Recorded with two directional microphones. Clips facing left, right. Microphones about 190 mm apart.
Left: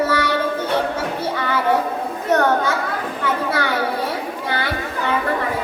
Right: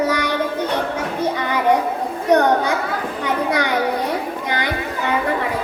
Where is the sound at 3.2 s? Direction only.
15° right (ahead or behind).